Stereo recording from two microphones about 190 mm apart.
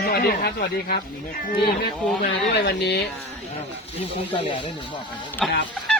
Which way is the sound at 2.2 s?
60° left (ahead or behind).